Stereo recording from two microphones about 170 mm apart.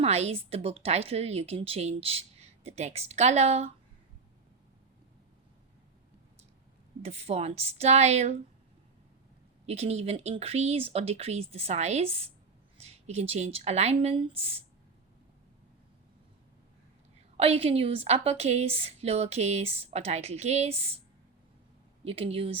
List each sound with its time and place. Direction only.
0.0 s a woman's voice: 35° right (ahead or behind)
7.0 s a woman's voice: 40° right (ahead or behind)
9.6 s a woman's voice: 40° right (ahead or behind)
17.3 s a woman's voice: 35° right (ahead or behind)
22.0 s a woman's voice: 35° right (ahead or behind)